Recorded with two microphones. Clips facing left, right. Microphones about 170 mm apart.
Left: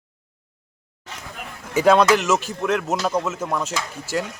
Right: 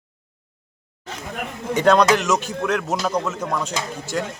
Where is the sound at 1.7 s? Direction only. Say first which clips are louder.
Even; 5° left (ahead or behind).